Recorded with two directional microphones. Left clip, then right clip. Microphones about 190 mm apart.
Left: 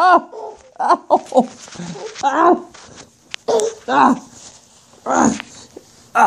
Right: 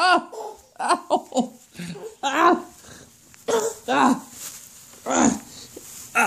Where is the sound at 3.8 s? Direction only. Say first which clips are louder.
Left 6 dB; 30° left (ahead or behind).